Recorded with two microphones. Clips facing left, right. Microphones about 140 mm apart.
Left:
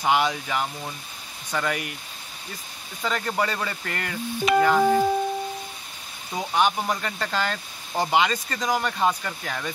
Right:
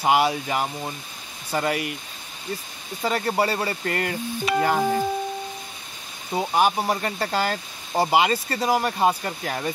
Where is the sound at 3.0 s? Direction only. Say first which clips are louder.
Right 3 dB; 35° right (ahead or behind).